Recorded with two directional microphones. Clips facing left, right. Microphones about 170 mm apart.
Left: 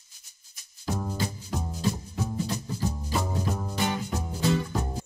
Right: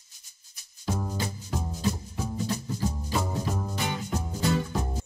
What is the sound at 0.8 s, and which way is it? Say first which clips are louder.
Music: left 1 dB; 5° right (ahead or behind).